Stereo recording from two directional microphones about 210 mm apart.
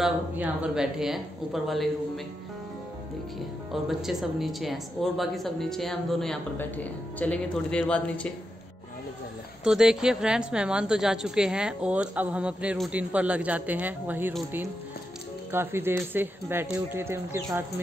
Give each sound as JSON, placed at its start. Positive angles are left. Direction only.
{"t": 0.0, "sound": "a woman's voice", "side_deg": -5}
{"t": 3.7, "sound": "a woman's voice", "side_deg": 0}
{"t": 9.7, "sound": "a woman's voice", "side_deg": -5}
{"t": 15.5, "sound": "speech", "side_deg": -10}